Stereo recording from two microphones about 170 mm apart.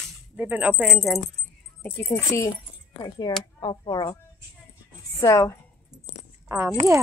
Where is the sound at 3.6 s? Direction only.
25° left (ahead or behind).